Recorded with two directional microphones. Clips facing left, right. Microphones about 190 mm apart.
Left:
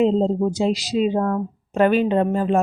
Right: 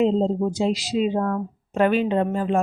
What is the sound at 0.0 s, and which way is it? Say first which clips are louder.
Speech: left 2 dB; 45° left (ahead or behind).